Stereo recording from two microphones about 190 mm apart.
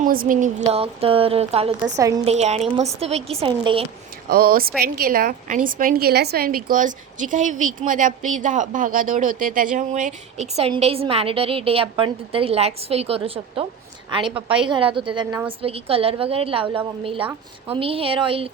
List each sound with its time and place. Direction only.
0.0 s speech: 45° right (ahead or behind)
2.0 s a woman's voice: 20° right (ahead or behind)
2.2 s a woman's voice: 35° right (ahead or behind)
4.3 s a woman's voice: 50° right (ahead or behind); by 18.5 s 30° right (ahead or behind)